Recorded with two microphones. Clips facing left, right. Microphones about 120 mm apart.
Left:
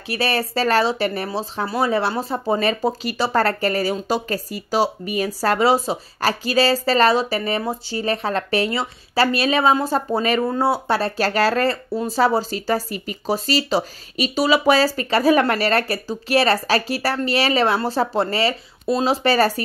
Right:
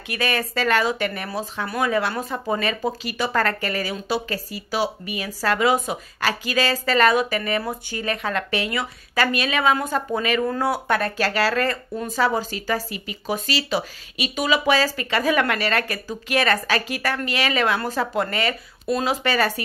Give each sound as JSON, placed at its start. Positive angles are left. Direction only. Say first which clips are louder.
{"t": 0.1, "sound": "speech", "louder": "left 3 dB", "side_deg": 35}